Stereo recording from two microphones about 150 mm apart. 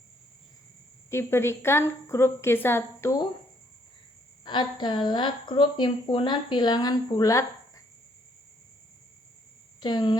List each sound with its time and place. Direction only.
1.1 s a woman's voice: 15° left (ahead or behind)
4.4 s a woman's voice: 30° left (ahead or behind)
9.8 s speech: 30° left (ahead or behind)